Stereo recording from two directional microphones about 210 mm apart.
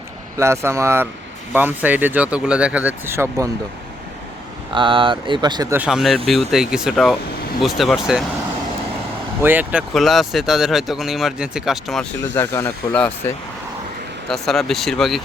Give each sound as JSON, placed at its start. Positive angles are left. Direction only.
{"t": 0.3, "sound": "speech", "side_deg": -15}
{"t": 4.7, "sound": "speech", "side_deg": -25}
{"t": 5.7, "sound": "speech", "side_deg": -5}
{"t": 9.4, "sound": "speech", "side_deg": -10}
{"t": 12.2, "sound": "speech", "side_deg": 10}